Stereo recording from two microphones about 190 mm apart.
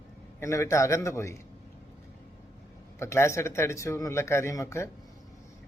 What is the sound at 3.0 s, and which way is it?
A man's voice, 15° left (ahead or behind).